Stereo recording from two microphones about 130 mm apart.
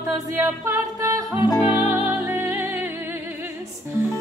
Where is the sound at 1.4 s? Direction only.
30° left (ahead or behind).